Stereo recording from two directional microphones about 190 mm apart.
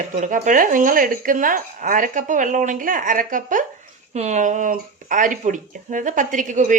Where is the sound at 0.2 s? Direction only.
45° right (ahead or behind).